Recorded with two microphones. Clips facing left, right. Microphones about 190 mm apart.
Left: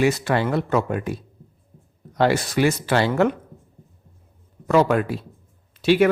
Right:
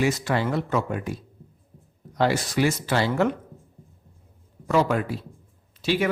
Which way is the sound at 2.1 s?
60° left (ahead or behind).